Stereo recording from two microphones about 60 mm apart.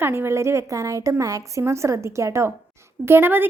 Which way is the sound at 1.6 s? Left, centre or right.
Right.